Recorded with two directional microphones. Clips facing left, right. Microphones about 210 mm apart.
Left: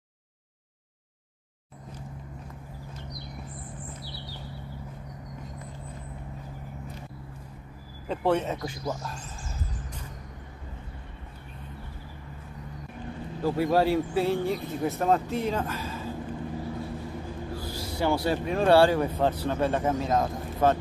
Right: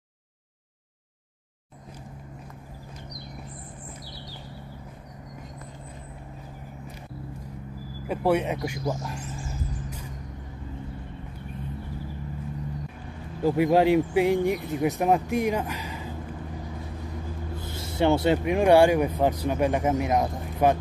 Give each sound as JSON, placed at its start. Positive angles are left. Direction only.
{"t": 8.1, "sound": "speech", "side_deg": -10}
{"t": 13.4, "sound": "speech", "side_deg": -15}
{"t": 17.6, "sound": "speech", "side_deg": -25}